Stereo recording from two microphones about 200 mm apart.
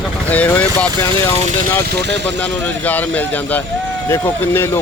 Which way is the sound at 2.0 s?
60° right (ahead or behind).